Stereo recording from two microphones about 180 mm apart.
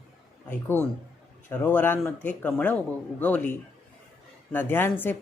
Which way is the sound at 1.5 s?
10° left (ahead or behind).